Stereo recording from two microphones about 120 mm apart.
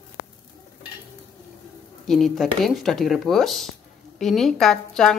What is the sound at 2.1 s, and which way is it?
Speech, centre (ahead or behind).